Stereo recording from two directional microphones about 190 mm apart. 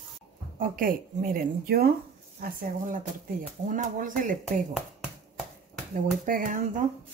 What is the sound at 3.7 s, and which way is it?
Speech, 45° right (ahead or behind).